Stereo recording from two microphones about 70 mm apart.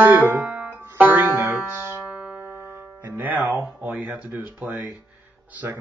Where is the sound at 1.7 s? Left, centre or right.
Right.